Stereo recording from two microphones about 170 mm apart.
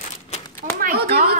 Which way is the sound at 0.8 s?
60° right (ahead or behind).